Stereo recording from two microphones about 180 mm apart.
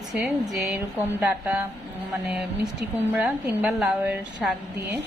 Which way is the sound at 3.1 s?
5° right (ahead or behind).